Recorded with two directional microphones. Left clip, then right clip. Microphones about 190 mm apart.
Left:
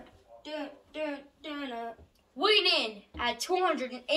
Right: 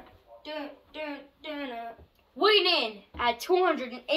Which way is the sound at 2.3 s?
30° right (ahead or behind).